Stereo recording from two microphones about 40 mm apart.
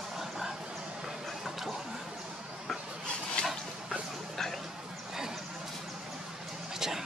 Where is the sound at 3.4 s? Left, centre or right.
Left.